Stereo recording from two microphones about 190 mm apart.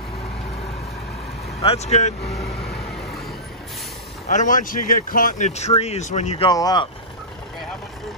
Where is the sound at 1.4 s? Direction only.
30° left (ahead or behind).